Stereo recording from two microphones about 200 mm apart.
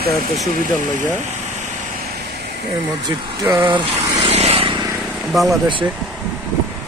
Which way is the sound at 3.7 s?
30° right (ahead or behind).